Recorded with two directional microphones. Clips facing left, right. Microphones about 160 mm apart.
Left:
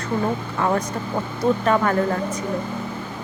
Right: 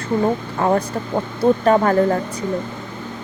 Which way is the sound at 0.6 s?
35° right (ahead or behind).